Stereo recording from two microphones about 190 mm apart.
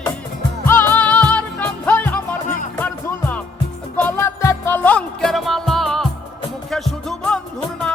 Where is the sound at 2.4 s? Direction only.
40° left (ahead or behind).